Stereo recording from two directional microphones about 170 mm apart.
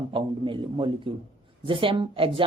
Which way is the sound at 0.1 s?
30° right (ahead or behind).